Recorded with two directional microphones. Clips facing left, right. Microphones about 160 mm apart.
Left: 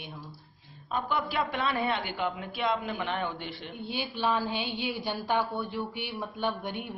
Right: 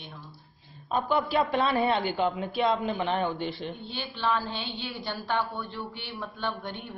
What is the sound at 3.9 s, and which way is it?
A woman's voice, 10° left (ahead or behind).